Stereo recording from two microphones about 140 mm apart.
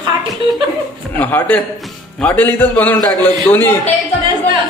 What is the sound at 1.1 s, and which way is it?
A man's voice, 10° left (ahead or behind).